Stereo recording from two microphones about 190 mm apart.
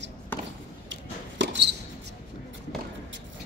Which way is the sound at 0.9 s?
70° right (ahead or behind).